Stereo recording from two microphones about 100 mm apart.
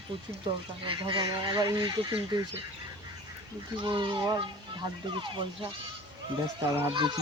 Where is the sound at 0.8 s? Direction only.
60° right (ahead or behind).